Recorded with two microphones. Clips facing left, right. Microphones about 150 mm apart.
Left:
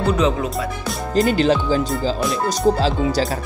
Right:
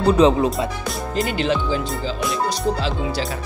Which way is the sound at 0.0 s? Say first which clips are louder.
Right 4 dB; 30° right (ahead or behind).